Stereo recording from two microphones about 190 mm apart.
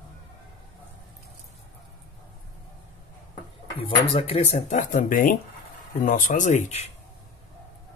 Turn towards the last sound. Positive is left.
turn(degrees=35)  # may be behind; listen again after turning